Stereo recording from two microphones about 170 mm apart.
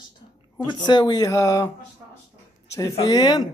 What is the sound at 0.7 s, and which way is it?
A man's voice, 25° left (ahead or behind).